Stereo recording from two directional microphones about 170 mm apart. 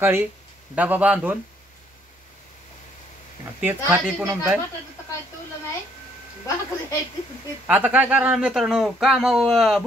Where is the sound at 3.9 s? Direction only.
15° right (ahead or behind).